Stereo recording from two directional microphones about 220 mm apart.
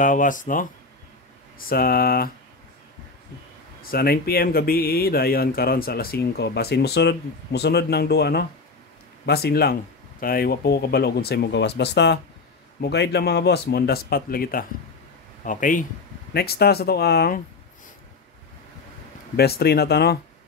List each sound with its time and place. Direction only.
0.0 s speech: 35° left (ahead or behind)
1.7 s speech: 45° left (ahead or behind)
3.8 s speech: 45° left (ahead or behind)
19.3 s speech: 45° left (ahead or behind)